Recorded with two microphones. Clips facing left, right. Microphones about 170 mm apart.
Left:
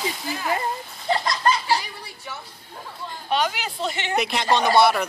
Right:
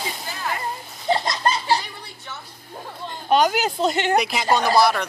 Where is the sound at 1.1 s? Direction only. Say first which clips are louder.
Even; 25° right (ahead or behind).